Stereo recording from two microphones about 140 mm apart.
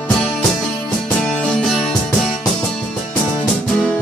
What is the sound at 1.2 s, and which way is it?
Music, 5° left (ahead or behind).